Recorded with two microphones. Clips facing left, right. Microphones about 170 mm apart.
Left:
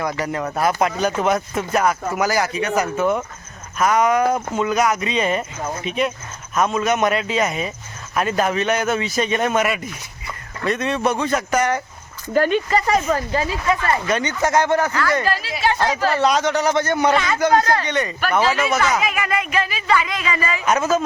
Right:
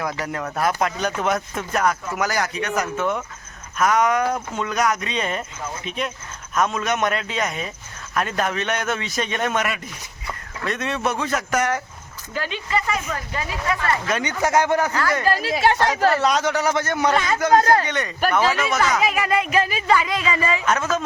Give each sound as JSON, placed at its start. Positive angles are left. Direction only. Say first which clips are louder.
{"t": 0.0, "sound": "speech", "louder": "left 3 dB", "side_deg": 0}
{"t": 12.3, "sound": "speech", "louder": "left 8 dB", "side_deg": 50}
{"t": 14.1, "sound": "speech", "louder": "left 1 dB", "side_deg": -10}
{"t": 15.3, "sound": "speech", "louder": "right 2 dB", "side_deg": -50}
{"t": 16.1, "sound": "speech", "louder": "left 2 dB", "side_deg": 0}
{"t": 19.0, "sound": "speech", "louder": "right 2 dB", "side_deg": -30}
{"t": 20.7, "sound": "speech", "louder": "left 7 dB", "side_deg": 10}